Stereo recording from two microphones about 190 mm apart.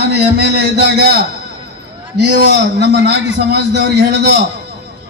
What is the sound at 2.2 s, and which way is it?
A man's voice, 60° right (ahead or behind).